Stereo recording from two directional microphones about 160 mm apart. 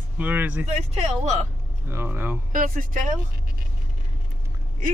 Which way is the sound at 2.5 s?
55° right (ahead or behind).